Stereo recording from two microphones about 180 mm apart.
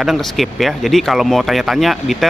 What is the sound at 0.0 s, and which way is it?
Speech, centre (ahead or behind).